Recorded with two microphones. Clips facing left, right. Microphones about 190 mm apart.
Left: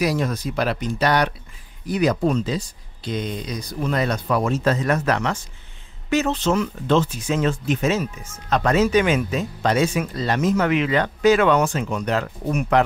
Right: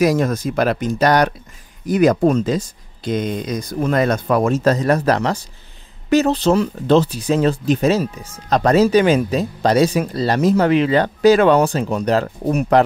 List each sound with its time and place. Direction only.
0.0 s speech: 45° right (ahead or behind)